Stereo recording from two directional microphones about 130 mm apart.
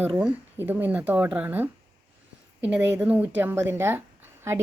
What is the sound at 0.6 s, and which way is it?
A woman's voice, 15° right (ahead or behind).